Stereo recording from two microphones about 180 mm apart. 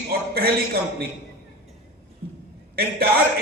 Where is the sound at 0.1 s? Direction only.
55° right (ahead or behind).